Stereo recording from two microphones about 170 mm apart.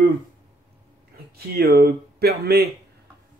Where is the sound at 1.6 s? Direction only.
70° right (ahead or behind).